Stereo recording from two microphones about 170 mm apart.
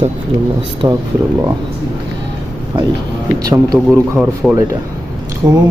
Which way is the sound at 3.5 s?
20° right (ahead or behind).